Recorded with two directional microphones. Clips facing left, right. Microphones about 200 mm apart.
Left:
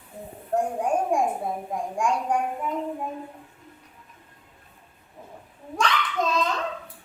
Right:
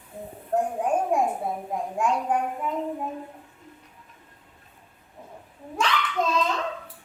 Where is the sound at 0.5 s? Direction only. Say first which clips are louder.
Even; 5° right (ahead or behind).